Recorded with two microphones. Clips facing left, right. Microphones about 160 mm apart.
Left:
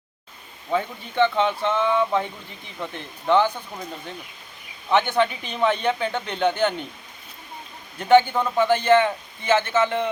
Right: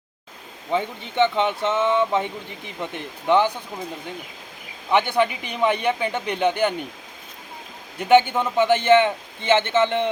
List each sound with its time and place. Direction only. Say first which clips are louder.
0.7 s a man's voice: right 1 dB; 20° right (ahead or behind)
4.9 s a man's voice: even; 10° right (ahead or behind)
7.9 s a man's voice: even; 20° right (ahead or behind)